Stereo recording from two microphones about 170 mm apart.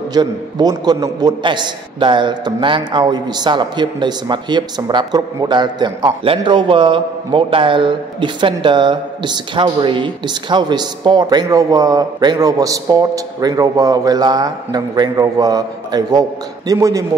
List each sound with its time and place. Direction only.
0.1 s a man's voice: 25° right (ahead or behind)